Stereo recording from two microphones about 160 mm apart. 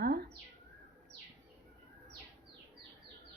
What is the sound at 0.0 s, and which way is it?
Bird, 80° right.